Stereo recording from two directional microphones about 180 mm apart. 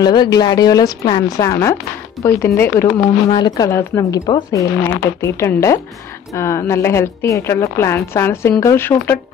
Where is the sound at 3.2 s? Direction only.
25° left (ahead or behind).